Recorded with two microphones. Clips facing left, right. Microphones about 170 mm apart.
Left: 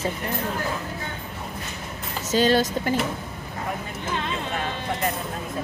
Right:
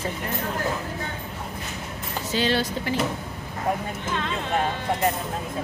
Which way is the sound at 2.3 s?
45° left (ahead or behind).